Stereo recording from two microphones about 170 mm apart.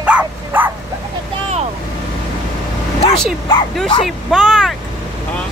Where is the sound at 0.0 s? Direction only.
10° right (ahead or behind).